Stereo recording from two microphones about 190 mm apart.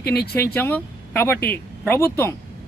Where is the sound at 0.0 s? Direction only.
55° left (ahead or behind).